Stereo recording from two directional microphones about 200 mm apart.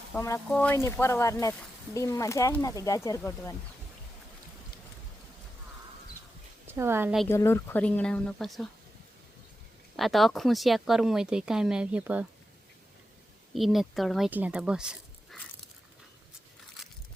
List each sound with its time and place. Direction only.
0.1 s speech: 10° left (ahead or behind)
6.7 s speech: 10° right (ahead or behind)
7.3 s speech: 15° left (ahead or behind)
10.0 s speech: centre (ahead or behind)
13.5 s speech: centre (ahead or behind)